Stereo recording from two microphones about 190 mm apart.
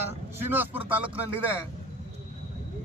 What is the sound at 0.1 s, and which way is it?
A man's voice, 10° right (ahead or behind).